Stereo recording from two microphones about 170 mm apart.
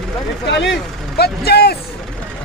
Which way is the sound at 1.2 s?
70° left (ahead or behind).